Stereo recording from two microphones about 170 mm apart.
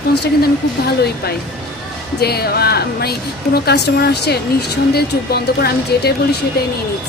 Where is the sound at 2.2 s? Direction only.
65° left (ahead or behind).